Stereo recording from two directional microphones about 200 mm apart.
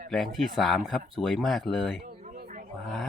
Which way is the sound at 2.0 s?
40° right (ahead or behind).